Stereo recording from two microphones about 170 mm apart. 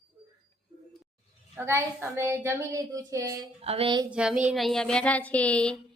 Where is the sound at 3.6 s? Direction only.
35° right (ahead or behind).